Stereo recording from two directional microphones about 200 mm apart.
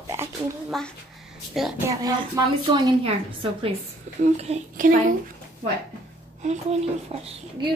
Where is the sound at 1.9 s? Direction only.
15° right (ahead or behind).